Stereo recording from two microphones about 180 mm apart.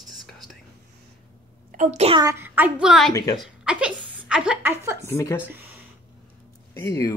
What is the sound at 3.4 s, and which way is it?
A woman's voice, 5° right (ahead or behind).